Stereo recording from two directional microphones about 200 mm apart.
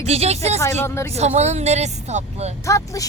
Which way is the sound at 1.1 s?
35° right (ahead or behind).